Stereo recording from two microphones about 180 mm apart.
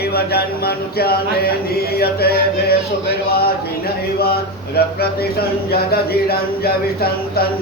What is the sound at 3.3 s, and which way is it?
Speech, 60° left (ahead or behind).